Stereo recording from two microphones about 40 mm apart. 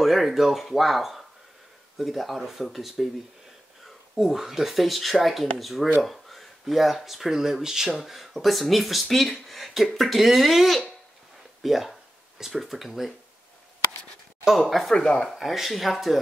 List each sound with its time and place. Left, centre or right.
0.0 s speech: centre
3.8 s a sound: centre
4.3 s speech: centre
9.1 s a sound: centre
9.9 s speech: centre
14.6 s speech: centre
14.9 s speech: centre
15.2 s speech: centre